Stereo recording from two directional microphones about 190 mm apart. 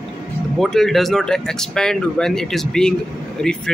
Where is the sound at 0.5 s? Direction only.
Centre (ahead or behind).